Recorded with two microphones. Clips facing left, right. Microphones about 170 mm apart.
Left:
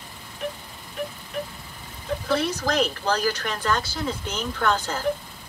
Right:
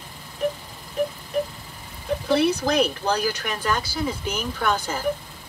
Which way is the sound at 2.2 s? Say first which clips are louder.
Right 4 dB; 15° right (ahead or behind).